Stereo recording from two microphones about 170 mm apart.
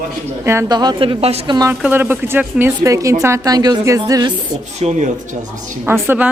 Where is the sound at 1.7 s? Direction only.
10° right (ahead or behind).